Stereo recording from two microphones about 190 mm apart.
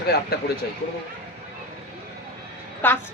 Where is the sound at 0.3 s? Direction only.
55° left (ahead or behind).